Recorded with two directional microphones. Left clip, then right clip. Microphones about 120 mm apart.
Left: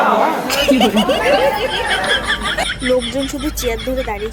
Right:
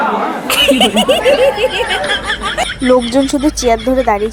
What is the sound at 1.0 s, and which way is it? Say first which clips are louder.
Speech: right 4 dB; 30° right (ahead or behind).